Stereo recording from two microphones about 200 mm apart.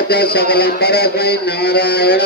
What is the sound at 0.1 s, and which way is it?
Speech, 50° left (ahead or behind).